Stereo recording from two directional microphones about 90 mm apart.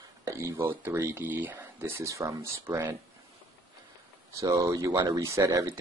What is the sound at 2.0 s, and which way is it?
Speech, 35° right (ahead or behind).